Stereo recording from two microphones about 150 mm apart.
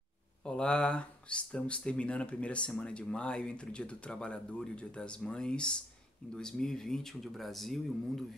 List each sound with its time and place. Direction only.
0.5 s speech: 5° left (ahead or behind)